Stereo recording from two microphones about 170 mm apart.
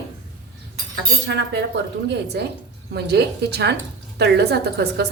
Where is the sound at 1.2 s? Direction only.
80° right.